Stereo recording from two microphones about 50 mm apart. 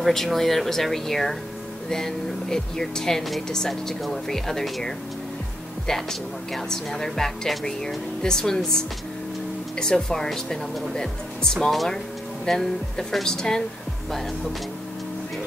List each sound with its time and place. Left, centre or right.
0.0 s speech: centre